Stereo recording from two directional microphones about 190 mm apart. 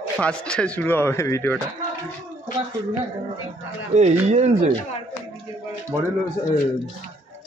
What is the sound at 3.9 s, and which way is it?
Speech, 35° right (ahead or behind).